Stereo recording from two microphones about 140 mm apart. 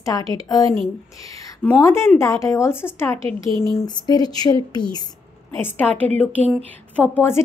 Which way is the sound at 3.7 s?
30° left (ahead or behind).